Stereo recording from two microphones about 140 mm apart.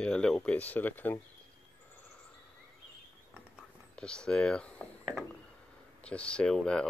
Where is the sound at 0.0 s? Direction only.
5° left (ahead or behind).